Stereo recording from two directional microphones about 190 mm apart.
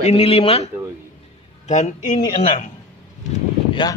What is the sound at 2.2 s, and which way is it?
Speech, 25° left (ahead or behind).